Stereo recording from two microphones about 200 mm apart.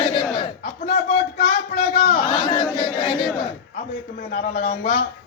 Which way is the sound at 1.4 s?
35° left (ahead or behind).